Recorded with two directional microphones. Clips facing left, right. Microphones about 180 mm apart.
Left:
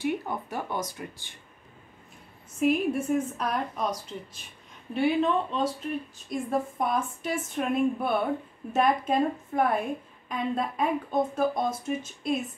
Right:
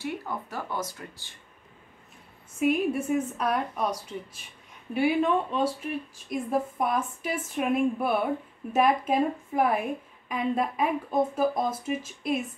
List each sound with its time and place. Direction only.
0.0 s speech: 20° left (ahead or behind)
2.6 s a woman's voice: 5° right (ahead or behind)
4.9 s a woman's voice: 10° right (ahead or behind)